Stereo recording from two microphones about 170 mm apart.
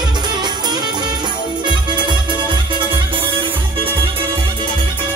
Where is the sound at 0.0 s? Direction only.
25° right (ahead or behind).